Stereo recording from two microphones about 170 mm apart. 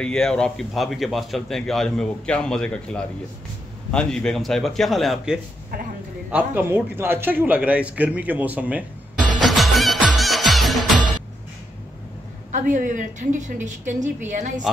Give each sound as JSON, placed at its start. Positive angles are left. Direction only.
{"t": 0.0, "sound": "a man's voice", "side_deg": 5}
{"t": 9.5, "sound": "music", "side_deg": 0}
{"t": 12.4, "sound": "a woman's voice", "side_deg": -45}